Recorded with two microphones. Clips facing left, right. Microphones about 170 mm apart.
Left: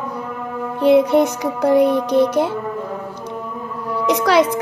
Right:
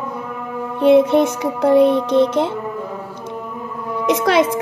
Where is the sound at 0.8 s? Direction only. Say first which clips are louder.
Right 1 dB; 25° right (ahead or behind).